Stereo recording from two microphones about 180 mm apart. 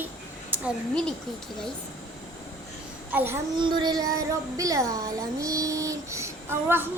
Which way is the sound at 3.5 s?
25° right (ahead or behind).